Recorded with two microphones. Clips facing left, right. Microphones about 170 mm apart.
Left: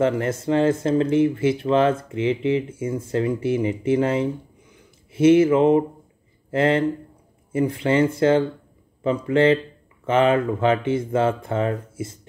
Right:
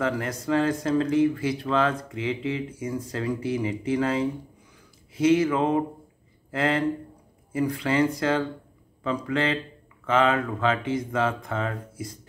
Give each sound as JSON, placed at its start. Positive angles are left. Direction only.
{"t": 0.0, "sound": "speech", "side_deg": 25}